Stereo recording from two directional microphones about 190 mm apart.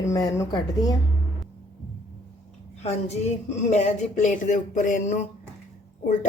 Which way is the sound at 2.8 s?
35° left (ahead or behind).